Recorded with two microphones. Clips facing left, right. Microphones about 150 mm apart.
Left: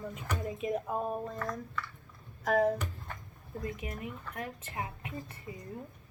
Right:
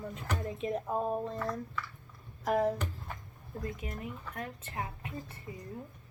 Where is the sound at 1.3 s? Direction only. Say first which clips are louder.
Right 1 dB; 5° right (ahead or behind).